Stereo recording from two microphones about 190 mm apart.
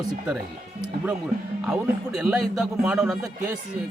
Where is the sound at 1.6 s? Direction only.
5° right (ahead or behind).